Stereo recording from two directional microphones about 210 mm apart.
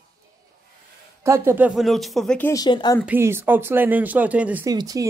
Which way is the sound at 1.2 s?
10° right (ahead or behind).